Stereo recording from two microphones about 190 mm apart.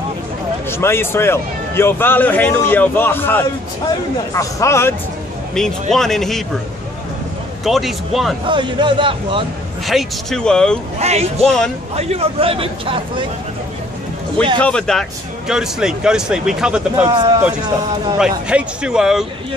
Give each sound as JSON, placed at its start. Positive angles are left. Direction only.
{"t": 0.7, "sound": "a man's voice", "side_deg": 15}
{"t": 5.5, "sound": "speech", "side_deg": 0}
{"t": 7.6, "sound": "speech", "side_deg": 0}
{"t": 8.5, "sound": "speech", "side_deg": -25}
{"t": 9.8, "sound": "speech", "side_deg": 0}
{"t": 11.0, "sound": "a man's voice", "side_deg": -35}
{"t": 11.4, "sound": "speech", "side_deg": 5}
{"t": 11.9, "sound": "a man's voice", "side_deg": -35}
{"t": 14.6, "sound": "speech", "side_deg": 5}
{"t": 18.2, "sound": "speech", "side_deg": -5}